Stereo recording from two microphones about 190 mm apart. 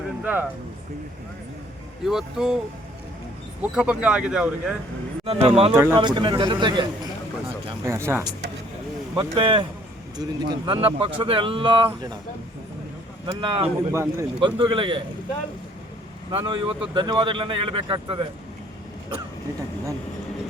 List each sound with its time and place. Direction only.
0.2 s speech: 10° right (ahead or behind)
2.0 s speech: 5° right (ahead or behind)
3.6 s speech: 5° right (ahead or behind)
5.2 s speech: 30° right (ahead or behind)
5.7 s speech: 10° right (ahead or behind)
6.0 s speech: 25° right (ahead or behind)
7.9 s speech: 15° right (ahead or behind)
9.1 s speech: 25° right (ahead or behind)
13.2 s speech: 25° right (ahead or behind)
13.9 s speech: 15° right (ahead or behind)
14.4 s speech: 25° right (ahead or behind)
16.3 s speech: 25° right (ahead or behind)